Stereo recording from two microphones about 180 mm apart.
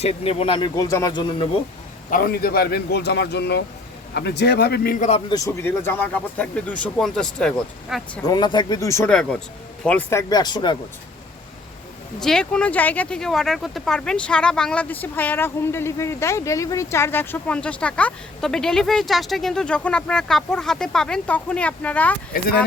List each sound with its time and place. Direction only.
0.0 s speech: 35° left (ahead or behind)
2.0 s speech: 50° left (ahead or behind)
5.3 s speech: 15° left (ahead or behind)
8.3 s speech: 25° left (ahead or behind)
12.2 s speech: 5° left (ahead or behind)